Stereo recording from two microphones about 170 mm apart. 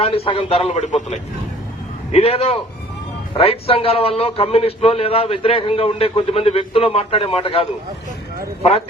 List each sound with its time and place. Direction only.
0.0 s a man's voice: 35° left (ahead or behind)
2.1 s a man's voice: 35° left (ahead or behind)